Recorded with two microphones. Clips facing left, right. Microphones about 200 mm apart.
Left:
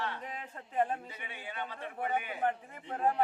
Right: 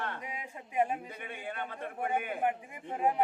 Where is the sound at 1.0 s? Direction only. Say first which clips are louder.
Right 4 dB; 50° right (ahead or behind).